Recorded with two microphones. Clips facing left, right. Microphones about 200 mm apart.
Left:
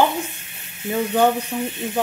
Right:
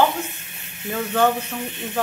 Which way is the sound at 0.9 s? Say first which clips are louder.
Left 2 dB; 15° left (ahead or behind).